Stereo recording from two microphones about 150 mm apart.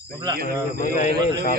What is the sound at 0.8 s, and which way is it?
Speech, 60° left (ahead or behind).